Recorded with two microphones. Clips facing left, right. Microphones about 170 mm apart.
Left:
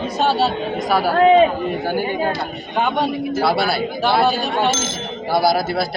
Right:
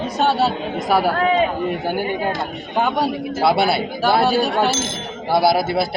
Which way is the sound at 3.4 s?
20° right (ahead or behind).